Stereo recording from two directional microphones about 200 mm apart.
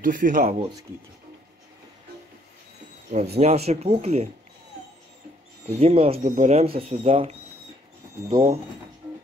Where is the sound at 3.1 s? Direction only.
45° right (ahead or behind).